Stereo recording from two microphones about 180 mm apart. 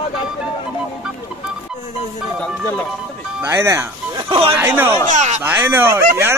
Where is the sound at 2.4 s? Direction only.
10° left (ahead or behind).